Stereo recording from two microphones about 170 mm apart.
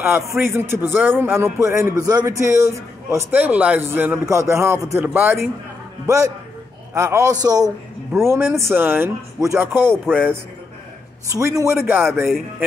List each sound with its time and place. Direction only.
0.0 s a man's voice: 15° right (ahead or behind)